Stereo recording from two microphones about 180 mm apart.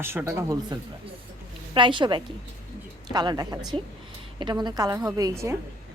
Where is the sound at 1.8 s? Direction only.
25° right (ahead or behind).